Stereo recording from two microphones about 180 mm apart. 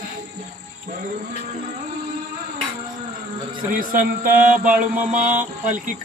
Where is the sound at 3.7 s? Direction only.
50° right (ahead or behind).